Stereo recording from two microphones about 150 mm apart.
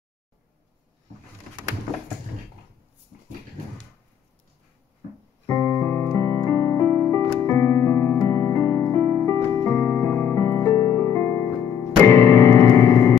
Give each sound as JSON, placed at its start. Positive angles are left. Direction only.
{"t": 5.5, "sound": "keyboard", "side_deg": 20}
{"t": 9.5, "sound": "music", "side_deg": 15}